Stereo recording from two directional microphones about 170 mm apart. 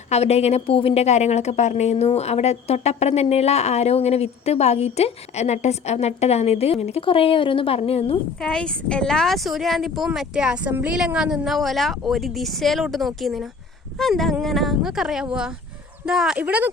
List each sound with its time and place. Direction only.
0.1 s a woman's voice: 40° left (ahead or behind)
8.4 s speech: 5° left (ahead or behind)